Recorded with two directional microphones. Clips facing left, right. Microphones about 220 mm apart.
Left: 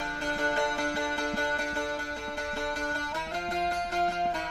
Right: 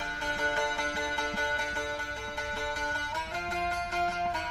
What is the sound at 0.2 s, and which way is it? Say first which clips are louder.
Music: left 3 dB; 35° left (ahead or behind).